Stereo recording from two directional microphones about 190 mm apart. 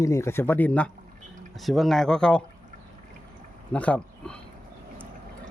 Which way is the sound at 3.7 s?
5° left (ahead or behind).